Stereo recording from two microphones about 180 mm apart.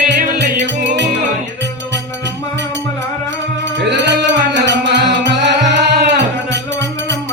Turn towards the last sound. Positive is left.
turn(degrees=-75)  # may be behind; listen again after turning